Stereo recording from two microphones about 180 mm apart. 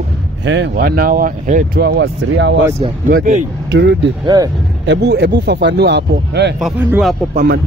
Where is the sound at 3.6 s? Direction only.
80° right.